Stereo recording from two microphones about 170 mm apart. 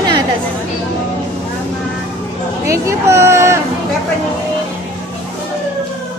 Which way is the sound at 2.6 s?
15° right (ahead or behind).